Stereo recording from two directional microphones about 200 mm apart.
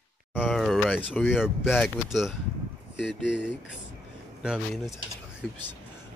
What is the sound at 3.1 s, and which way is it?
Speech, 60° left (ahead or behind).